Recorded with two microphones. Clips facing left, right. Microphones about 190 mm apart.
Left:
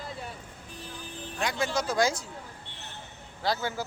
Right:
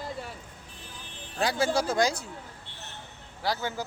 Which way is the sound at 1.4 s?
35° right (ahead or behind).